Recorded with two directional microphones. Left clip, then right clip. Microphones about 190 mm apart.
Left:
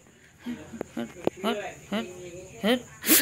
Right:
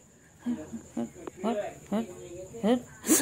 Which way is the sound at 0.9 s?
10° right (ahead or behind).